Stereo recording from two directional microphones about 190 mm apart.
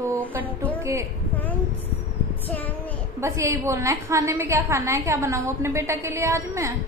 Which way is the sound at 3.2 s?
15° right (ahead or behind).